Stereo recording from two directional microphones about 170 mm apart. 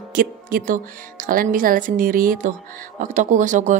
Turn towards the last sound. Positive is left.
turn(degrees=-45)  # may be behind; listen again after turning